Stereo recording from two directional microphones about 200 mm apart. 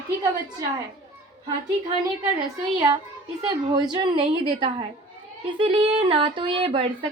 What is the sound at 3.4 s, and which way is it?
Speech, 20° right (ahead or behind).